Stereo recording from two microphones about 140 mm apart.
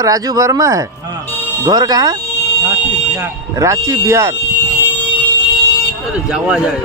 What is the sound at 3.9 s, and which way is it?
Speech, 20° right (ahead or behind).